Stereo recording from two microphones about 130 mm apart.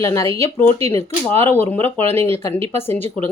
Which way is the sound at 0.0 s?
20° left (ahead or behind).